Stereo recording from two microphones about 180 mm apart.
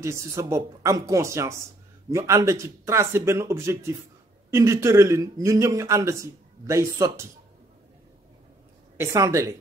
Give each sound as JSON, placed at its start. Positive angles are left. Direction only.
{"t": 0.0, "sound": "speech", "side_deg": -15}
{"t": 8.9, "sound": "speech", "side_deg": -15}